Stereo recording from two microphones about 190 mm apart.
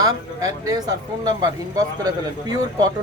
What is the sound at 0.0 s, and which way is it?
Speech, 20° right (ahead or behind).